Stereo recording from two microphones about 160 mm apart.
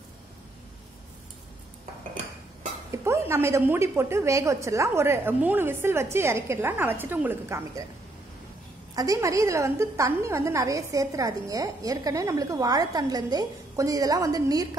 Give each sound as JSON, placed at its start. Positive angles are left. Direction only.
{"t": 2.9, "sound": "a woman's voice", "side_deg": -15}
{"t": 8.9, "sound": "a woman's voice", "side_deg": -20}